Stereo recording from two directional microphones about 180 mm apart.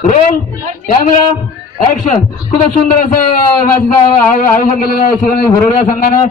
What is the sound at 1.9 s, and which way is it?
A man's voice, 45° left (ahead or behind).